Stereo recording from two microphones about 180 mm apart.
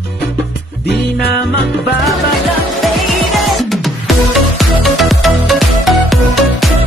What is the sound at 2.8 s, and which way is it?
Music, centre (ahead or behind).